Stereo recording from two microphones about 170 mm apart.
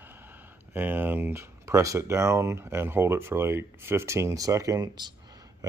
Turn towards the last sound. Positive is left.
turn(degrees=-20)  # may be behind; listen again after turning